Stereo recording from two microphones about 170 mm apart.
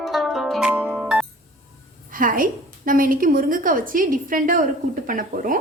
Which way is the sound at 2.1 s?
55° right (ahead or behind).